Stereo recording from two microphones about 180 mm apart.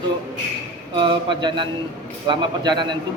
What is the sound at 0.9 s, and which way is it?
A man's voice, 25° right (ahead or behind).